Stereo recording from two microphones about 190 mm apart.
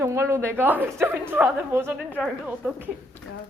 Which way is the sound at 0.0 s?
15° right (ahead or behind).